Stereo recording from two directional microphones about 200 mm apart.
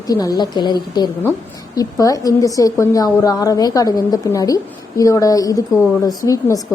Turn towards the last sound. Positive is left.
turn(degrees=15)  # may be behind; listen again after turning